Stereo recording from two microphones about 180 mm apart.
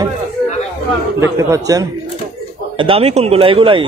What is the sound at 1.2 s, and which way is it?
Speech, 15° right (ahead or behind).